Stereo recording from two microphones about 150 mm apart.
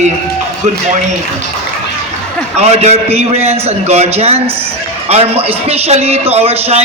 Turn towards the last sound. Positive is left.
turn(degrees=-40)  # may be behind; listen again after turning